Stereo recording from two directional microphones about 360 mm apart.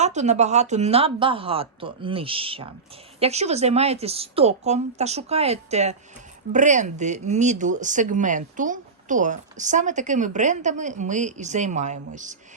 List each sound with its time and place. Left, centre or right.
0.0 s speech: centre